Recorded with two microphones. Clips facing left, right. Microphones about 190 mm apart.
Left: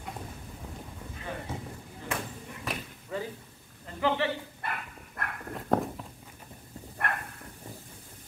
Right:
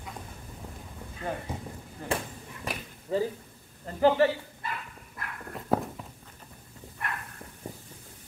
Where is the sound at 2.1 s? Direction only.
30° right (ahead or behind).